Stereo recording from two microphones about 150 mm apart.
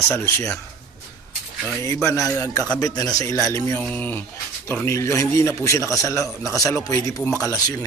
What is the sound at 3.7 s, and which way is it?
Speech, 10° left (ahead or behind).